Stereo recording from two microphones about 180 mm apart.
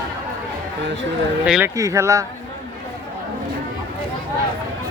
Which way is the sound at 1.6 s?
15° right (ahead or behind).